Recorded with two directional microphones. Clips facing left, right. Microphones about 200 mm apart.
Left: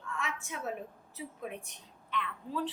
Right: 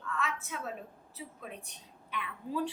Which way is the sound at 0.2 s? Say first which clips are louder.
Right 1 dB; 20° left (ahead or behind).